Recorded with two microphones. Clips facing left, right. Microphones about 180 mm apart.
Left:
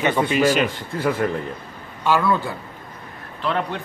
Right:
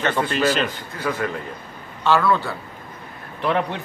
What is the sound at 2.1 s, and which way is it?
Speech, 15° left (ahead or behind).